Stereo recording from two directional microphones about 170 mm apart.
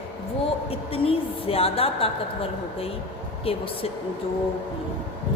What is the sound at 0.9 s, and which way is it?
A woman's voice, 35° left (ahead or behind).